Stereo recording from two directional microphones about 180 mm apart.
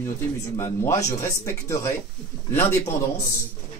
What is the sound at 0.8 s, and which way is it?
Speech, 20° left (ahead or behind).